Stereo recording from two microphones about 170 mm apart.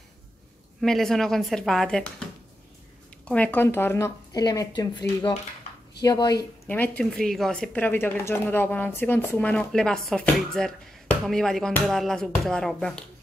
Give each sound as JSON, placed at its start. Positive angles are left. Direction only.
{"t": 0.7, "sound": "speech", "side_deg": 0}
{"t": 3.3, "sound": "speech", "side_deg": 10}
{"t": 6.7, "sound": "speech", "side_deg": 10}